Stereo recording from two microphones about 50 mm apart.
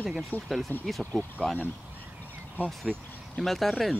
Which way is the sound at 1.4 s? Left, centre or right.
Left.